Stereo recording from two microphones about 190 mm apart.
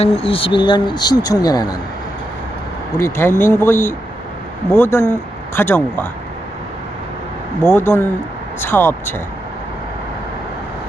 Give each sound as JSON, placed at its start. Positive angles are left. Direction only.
{"t": 0.0, "sound": "speech", "side_deg": 30}
{"t": 3.0, "sound": "speech", "side_deg": 10}
{"t": 7.6, "sound": "speech", "side_deg": 10}